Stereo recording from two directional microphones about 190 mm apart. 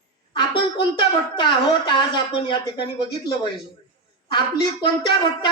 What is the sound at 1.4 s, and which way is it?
Speech, 25° left (ahead or behind).